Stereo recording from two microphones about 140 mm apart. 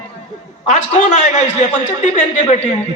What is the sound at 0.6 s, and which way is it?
A man's voice, 60° left (ahead or behind).